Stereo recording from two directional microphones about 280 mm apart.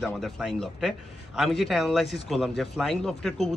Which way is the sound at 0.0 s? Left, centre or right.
Centre.